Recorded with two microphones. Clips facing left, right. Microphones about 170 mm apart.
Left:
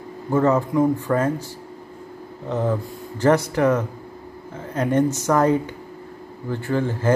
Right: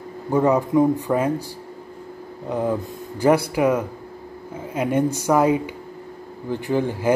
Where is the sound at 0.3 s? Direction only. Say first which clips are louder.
Right 1 dB; 15° right (ahead or behind).